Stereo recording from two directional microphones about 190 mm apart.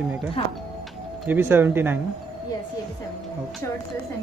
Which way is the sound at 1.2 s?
10° right (ahead or behind).